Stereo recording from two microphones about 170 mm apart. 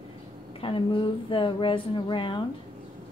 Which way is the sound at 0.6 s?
30° left (ahead or behind).